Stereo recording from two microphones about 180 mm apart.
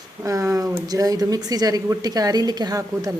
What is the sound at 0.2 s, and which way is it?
Speech, 15° right (ahead or behind).